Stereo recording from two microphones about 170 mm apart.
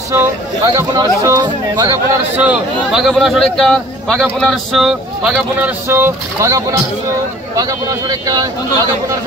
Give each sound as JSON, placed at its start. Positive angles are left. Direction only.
{"t": 0.1, "sound": "speech", "side_deg": -15}
{"t": 2.3, "sound": "speech", "side_deg": -5}
{"t": 5.9, "sound": "speech", "side_deg": -15}